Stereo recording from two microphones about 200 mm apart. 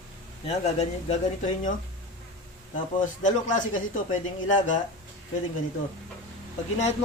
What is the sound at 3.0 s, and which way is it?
Speech, 40° left (ahead or behind).